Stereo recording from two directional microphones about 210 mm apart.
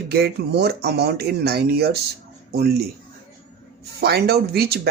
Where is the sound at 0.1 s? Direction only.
50° right (ahead or behind).